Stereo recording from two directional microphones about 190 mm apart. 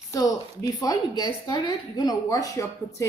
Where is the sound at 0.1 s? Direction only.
20° left (ahead or behind).